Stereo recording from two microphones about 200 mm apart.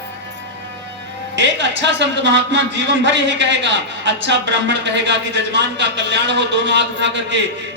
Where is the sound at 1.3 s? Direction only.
65° right (ahead or behind).